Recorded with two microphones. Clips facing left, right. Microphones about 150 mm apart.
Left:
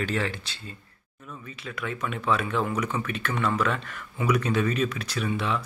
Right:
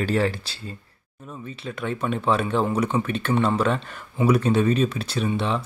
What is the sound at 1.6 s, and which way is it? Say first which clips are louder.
Speech: right 5 dB; 30° right (ahead or behind).